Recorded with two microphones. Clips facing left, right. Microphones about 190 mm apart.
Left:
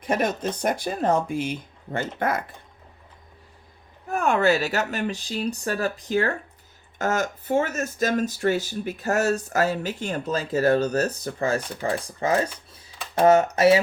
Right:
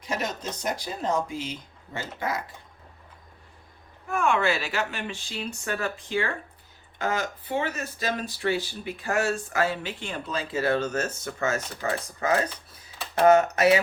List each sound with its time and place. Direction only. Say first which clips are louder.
0.0 s speech: left 7 dB; 55° left (ahead or behind)
4.1 s speech: left 4 dB; 40° left (ahead or behind)